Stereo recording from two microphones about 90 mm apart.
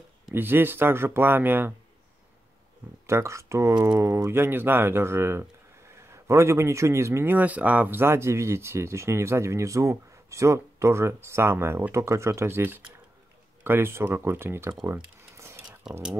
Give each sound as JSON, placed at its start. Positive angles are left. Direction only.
{"t": 0.3, "sound": "speech", "side_deg": -25}
{"t": 3.1, "sound": "speech", "side_deg": -30}
{"t": 14.9, "sound": "a sound", "side_deg": -30}
{"t": 15.8, "sound": "speech", "side_deg": -5}